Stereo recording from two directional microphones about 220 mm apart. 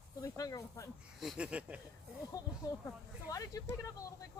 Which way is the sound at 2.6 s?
15° left (ahead or behind).